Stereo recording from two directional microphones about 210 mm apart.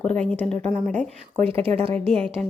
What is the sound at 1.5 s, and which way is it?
Speech, 25° right (ahead or behind).